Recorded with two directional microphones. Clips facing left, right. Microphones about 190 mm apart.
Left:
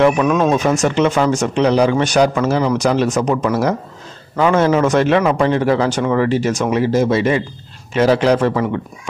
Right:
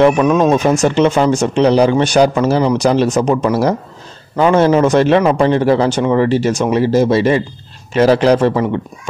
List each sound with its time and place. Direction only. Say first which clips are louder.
0.0 s a man's voice: right 3 dB; 25° right (ahead or behind)